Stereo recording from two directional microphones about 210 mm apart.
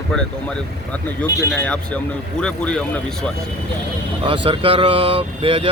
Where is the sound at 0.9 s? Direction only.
5° left (ahead or behind).